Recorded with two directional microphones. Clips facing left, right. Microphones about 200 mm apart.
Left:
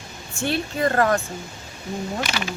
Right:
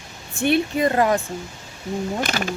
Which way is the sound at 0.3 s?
20° right (ahead or behind).